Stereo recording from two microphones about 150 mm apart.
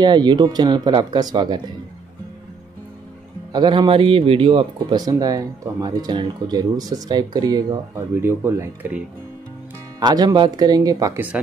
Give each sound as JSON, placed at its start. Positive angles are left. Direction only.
{"t": 0.0, "sound": "speech", "side_deg": -30}
{"t": 3.5, "sound": "speech", "side_deg": -30}
{"t": 8.1, "sound": "speech", "side_deg": -15}
{"t": 9.9, "sound": "speech", "side_deg": -25}
{"t": 11.1, "sound": "speech", "side_deg": -10}